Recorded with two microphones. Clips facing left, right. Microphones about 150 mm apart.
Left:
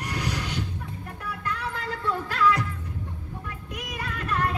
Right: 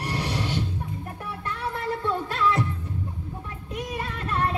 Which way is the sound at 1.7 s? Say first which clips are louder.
Right 3 dB; 25° right (ahead or behind).